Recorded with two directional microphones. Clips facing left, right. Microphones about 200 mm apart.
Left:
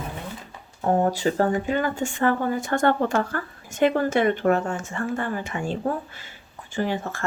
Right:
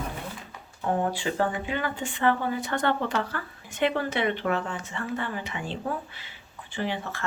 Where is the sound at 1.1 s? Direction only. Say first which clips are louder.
Left 5 dB; 40° left (ahead or behind).